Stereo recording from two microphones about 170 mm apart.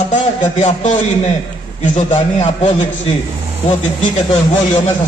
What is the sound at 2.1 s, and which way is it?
Speech, 40° left (ahead or behind).